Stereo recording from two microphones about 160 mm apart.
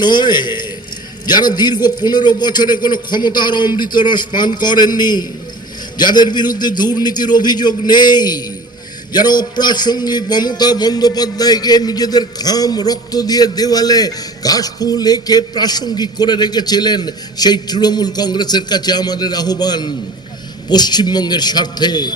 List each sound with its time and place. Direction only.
0.0 s a man's voice: 25° left (ahead or behind)